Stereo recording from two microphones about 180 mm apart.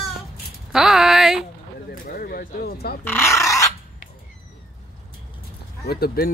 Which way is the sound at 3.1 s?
15° left (ahead or behind).